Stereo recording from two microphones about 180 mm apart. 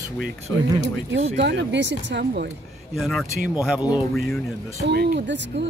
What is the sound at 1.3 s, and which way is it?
Speech, 75° right (ahead or behind).